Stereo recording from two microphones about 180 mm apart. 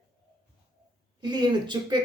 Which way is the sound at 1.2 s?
25° right (ahead or behind).